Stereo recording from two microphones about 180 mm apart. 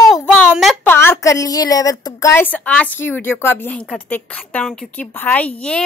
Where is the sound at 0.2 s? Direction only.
5° left (ahead or behind).